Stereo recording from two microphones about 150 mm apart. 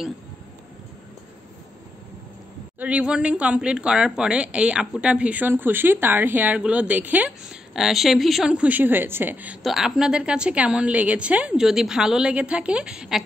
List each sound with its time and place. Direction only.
2.8 s speech: 10° right (ahead or behind)